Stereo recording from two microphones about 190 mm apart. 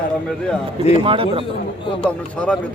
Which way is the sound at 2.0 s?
5° left (ahead or behind).